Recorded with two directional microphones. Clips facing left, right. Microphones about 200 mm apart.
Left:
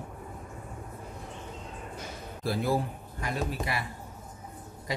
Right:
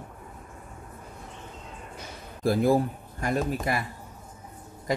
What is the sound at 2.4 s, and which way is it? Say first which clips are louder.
A man's voice: right 7 dB; 50° right (ahead or behind).